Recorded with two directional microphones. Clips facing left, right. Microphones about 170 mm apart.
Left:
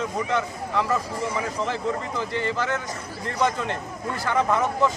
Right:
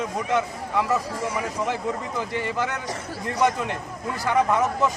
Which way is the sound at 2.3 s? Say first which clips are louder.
Left 2 dB; 15° right (ahead or behind).